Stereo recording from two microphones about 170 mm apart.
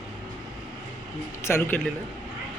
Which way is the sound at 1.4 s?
15° left (ahead or behind).